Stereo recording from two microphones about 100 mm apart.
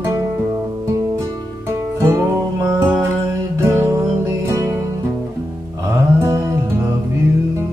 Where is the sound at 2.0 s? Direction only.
30° right (ahead or behind).